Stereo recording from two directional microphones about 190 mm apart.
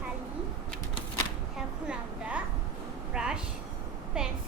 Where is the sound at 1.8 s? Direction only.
5° right (ahead or behind).